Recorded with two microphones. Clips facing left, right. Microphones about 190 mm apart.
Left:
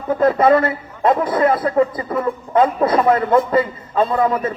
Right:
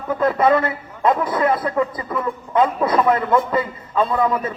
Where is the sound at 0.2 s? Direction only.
45° left (ahead or behind).